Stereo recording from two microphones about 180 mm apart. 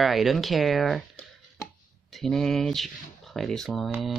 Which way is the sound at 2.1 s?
Centre (ahead or behind).